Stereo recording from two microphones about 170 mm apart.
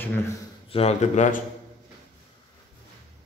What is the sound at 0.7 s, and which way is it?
Speech, 40° left (ahead or behind).